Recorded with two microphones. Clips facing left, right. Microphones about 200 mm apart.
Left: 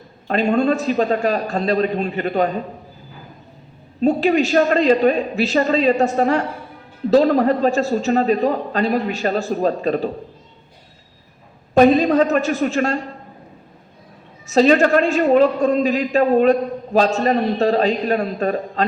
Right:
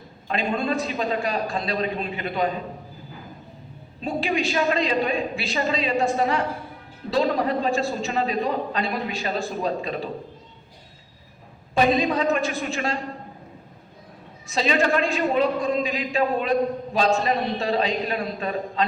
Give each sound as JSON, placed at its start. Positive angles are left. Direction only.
{"t": 0.3, "sound": "a man's voice", "side_deg": 45}
{"t": 4.0, "sound": "a man's voice", "side_deg": 40}
{"t": 11.7, "sound": "a man's voice", "side_deg": 40}
{"t": 14.5, "sound": "a man's voice", "side_deg": 40}